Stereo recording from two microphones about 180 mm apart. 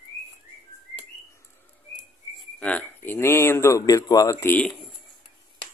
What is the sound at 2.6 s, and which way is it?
Speech, 10° left (ahead or behind).